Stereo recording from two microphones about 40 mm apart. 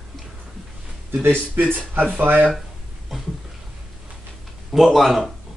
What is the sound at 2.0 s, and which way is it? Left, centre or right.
Speech, right.